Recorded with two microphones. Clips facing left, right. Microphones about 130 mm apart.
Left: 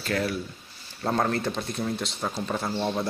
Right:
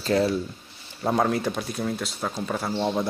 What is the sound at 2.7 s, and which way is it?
Speech, 15° right (ahead or behind).